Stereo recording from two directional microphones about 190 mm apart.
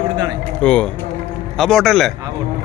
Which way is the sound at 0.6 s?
5° left (ahead or behind).